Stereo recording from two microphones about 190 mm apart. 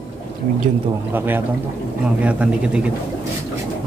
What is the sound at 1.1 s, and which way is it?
Speech, 10° right (ahead or behind).